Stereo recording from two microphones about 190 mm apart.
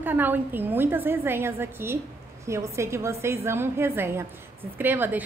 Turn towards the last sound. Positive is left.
turn(degrees=-10)  # may be behind; listen again after turning